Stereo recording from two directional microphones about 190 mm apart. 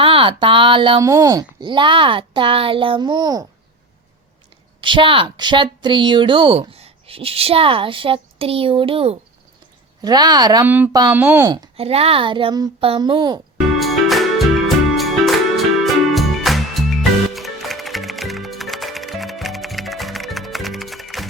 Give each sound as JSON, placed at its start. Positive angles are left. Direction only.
{"t": 0.0, "sound": "a woman's voice", "side_deg": -25}
{"t": 4.8, "sound": "a woman's voice", "side_deg": -25}
{"t": 10.7, "sound": "speech", "side_deg": -10}
{"t": 11.8, "sound": "a woman's voice", "side_deg": -30}
{"t": 13.7, "sound": "music", "side_deg": 0}